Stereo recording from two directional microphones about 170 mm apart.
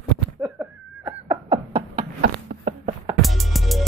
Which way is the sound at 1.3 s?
35° right (ahead or behind).